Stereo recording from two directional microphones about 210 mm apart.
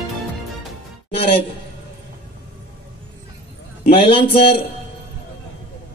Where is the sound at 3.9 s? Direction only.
25° left (ahead or behind).